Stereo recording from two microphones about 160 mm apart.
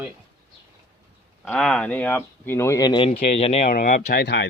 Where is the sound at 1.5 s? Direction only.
5° left (ahead or behind); by 3.7 s 40° left (ahead or behind).